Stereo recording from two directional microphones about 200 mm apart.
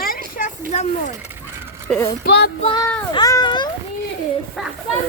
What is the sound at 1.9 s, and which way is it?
Speech, 5° left (ahead or behind).